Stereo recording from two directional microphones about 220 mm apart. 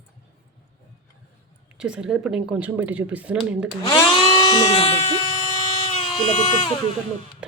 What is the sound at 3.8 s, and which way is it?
Speech, 20° left (ahead or behind).